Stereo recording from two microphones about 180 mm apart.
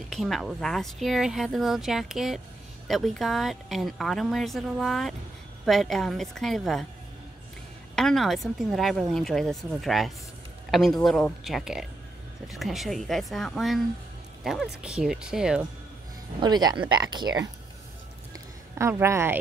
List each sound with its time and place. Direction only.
0.1 s speech: centre (ahead or behind)
7.9 s speech: centre (ahead or behind)
16.3 s speech: 25° right (ahead or behind)
18.3 s a sound: 15° right (ahead or behind)